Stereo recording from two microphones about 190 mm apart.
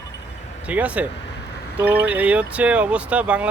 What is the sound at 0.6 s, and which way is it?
Speech, 10° right (ahead or behind).